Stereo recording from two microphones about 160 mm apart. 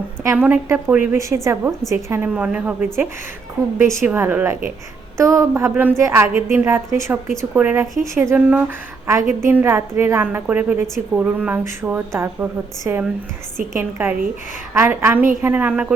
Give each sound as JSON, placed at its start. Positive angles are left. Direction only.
{"t": 0.2, "sound": "a woman's voice", "side_deg": -10}